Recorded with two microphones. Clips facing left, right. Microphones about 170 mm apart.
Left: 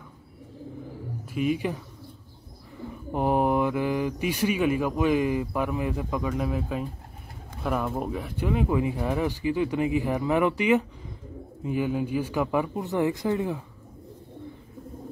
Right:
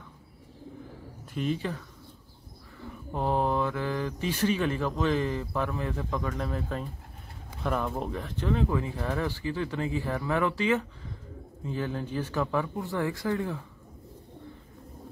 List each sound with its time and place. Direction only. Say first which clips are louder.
1.2 s speech: left 4 dB; 10° left (ahead or behind)
3.1 s speech: left 4 dB; 15° left (ahead or behind)